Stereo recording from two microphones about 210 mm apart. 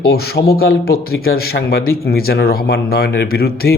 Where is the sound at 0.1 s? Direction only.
50° left (ahead or behind).